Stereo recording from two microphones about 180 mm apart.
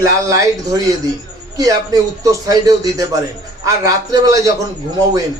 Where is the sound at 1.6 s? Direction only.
20° right (ahead or behind).